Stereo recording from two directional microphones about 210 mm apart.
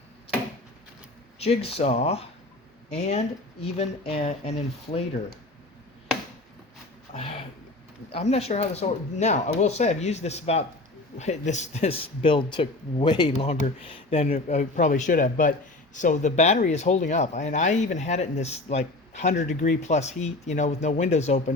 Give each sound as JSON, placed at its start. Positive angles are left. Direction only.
{"t": 1.4, "sound": "speech", "side_deg": 30}
{"t": 7.1, "sound": "a sound", "side_deg": 25}
{"t": 8.1, "sound": "speech", "side_deg": 30}